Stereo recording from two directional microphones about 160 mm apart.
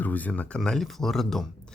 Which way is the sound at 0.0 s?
10° left (ahead or behind).